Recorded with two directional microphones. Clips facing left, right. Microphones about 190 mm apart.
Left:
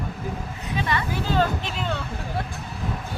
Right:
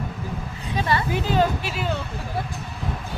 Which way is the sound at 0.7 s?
35° right (ahead or behind).